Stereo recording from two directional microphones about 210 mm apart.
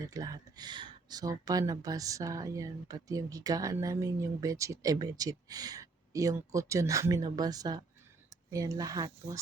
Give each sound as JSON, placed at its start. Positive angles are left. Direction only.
{"t": 0.1, "sound": "speech", "side_deg": -15}